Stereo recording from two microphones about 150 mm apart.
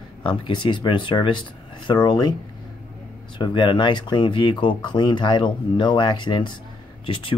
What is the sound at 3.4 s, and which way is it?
Speech, 30° left (ahead or behind).